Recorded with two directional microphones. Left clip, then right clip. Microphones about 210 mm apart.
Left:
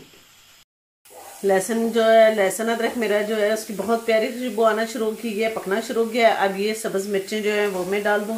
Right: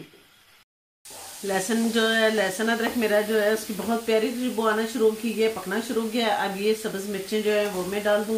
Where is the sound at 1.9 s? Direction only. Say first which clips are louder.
Left 8 dB; 40° left (ahead or behind).